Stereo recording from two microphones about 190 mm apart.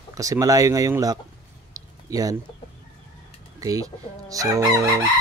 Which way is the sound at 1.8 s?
20° right (ahead or behind).